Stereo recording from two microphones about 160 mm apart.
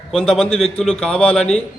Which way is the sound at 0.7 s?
5° left (ahead or behind).